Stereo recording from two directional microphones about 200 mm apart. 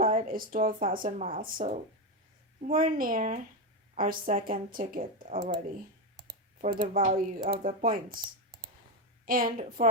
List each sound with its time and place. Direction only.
0.0 s speech: 45° right (ahead or behind)
6.2 s computer keyboard: 50° right (ahead or behind)
6.8 s speech: 40° right (ahead or behind)
9.2 s speech: 45° right (ahead or behind)